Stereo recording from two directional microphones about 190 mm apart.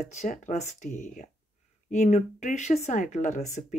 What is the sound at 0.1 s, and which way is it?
Speech, 40° left (ahead or behind).